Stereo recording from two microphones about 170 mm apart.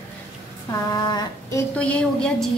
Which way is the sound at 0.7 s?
20° left (ahead or behind).